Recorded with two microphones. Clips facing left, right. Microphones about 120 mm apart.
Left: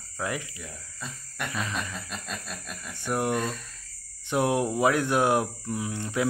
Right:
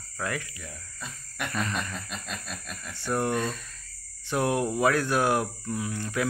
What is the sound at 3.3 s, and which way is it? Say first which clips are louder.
Speech: even; centre (ahead or behind).